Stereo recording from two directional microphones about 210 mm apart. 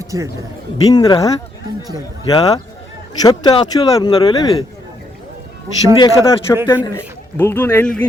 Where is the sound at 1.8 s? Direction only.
15° right (ahead or behind).